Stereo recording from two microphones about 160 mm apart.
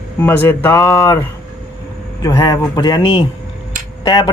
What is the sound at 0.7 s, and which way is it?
Speech, 25° left (ahead or behind).